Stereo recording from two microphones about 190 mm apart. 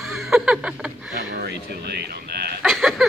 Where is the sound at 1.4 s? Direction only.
60° right (ahead or behind).